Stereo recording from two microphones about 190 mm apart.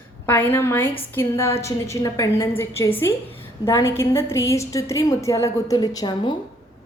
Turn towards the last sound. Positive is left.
turn(degrees=20)  # may be behind; listen again after turning